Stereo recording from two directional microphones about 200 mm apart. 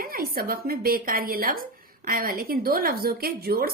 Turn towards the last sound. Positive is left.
turn(degrees=-50)  # may be behind; listen again after turning